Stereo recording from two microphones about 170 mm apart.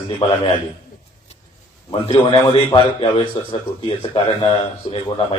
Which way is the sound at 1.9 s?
30° left (ahead or behind).